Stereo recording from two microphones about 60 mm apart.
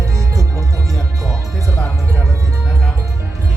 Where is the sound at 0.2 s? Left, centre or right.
Right.